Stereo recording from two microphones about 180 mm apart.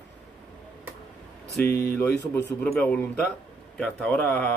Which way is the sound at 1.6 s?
60° left (ahead or behind).